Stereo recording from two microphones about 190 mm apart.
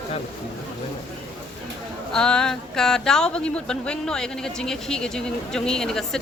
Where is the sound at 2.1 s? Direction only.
5° left (ahead or behind).